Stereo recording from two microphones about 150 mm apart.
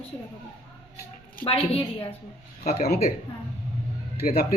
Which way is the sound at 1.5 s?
40° left (ahead or behind).